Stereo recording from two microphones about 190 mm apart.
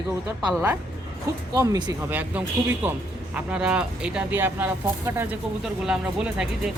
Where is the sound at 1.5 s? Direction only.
20° right (ahead or behind).